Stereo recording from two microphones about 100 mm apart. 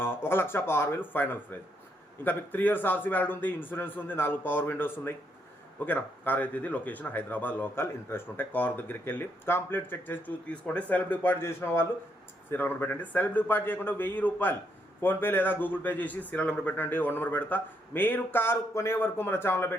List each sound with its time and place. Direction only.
0.0 s speech: 25° left (ahead or behind)